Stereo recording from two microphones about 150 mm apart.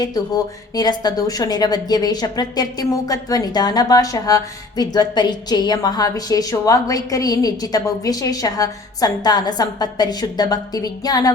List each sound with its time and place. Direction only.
0.0 s a woman's voice: 25° left (ahead or behind)